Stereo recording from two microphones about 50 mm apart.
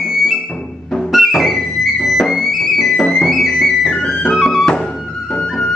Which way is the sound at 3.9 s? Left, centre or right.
Centre.